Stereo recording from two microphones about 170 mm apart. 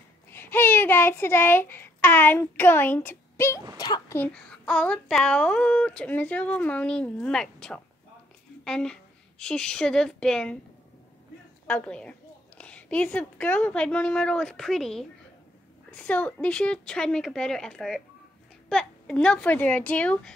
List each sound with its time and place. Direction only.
0.3 s a child's voice: 10° left (ahead or behind)
4.2 s a woman's voice: 5° left (ahead or behind)
11.6 s a woman's voice: 10° left (ahead or behind)